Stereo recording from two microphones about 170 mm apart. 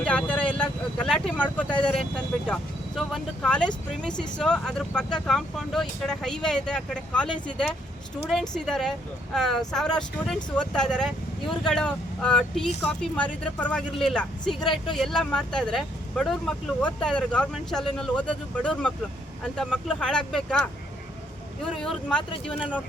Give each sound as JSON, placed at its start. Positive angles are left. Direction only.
{"t": 0.0, "sound": "speech", "side_deg": 5}
{"t": 21.8, "sound": "speech", "side_deg": 5}